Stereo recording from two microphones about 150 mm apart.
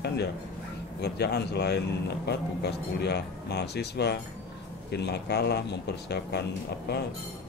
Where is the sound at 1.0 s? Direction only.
90° left.